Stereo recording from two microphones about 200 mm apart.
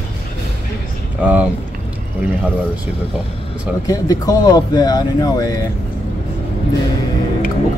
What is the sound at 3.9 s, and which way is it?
Speech, 15° left (ahead or behind).